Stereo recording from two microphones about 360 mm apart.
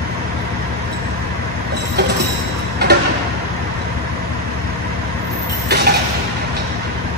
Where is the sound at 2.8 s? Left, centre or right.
Right.